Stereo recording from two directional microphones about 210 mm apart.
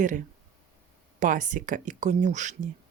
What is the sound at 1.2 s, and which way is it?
Speech, 40° right (ahead or behind).